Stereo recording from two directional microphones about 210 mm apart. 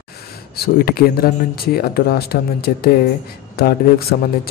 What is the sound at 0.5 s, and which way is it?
Speech, 50° left (ahead or behind).